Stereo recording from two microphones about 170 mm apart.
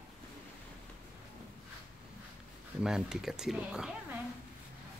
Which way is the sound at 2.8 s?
5° right (ahead or behind).